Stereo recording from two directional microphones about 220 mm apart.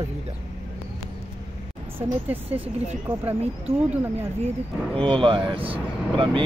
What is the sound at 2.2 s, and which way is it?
Speech, 10° right (ahead or behind).